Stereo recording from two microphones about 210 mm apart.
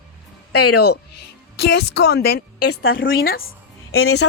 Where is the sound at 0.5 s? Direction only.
90° left.